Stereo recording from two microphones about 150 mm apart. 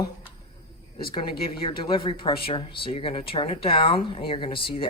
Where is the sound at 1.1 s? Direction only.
35° left (ahead or behind).